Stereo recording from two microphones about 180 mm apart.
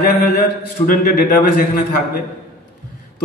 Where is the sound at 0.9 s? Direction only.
55° left (ahead or behind).